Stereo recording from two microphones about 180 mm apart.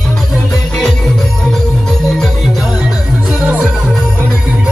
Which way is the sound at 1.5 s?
Centre (ahead or behind).